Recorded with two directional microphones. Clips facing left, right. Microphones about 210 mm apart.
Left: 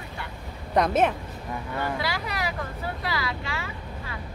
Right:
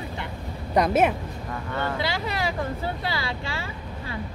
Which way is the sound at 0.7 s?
5° right (ahead or behind).